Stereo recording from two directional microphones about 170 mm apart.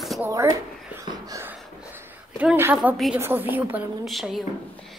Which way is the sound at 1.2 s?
20° right (ahead or behind).